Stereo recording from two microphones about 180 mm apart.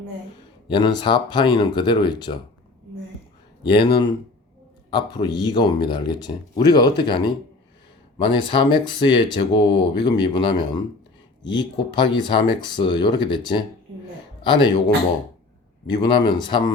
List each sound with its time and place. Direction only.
0.7 s speech: 25° left (ahead or behind)
3.6 s speech: 25° left (ahead or behind)
15.9 s speech: 25° left (ahead or behind)